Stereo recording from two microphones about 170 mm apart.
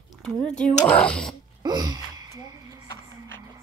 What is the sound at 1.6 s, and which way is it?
Gasp, 25° right (ahead or behind).